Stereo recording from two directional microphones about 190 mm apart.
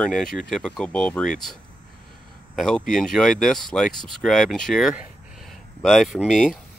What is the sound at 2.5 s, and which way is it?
Speech, 5° left (ahead or behind).